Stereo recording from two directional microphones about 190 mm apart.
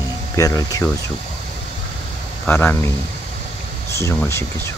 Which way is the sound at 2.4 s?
10° left (ahead or behind).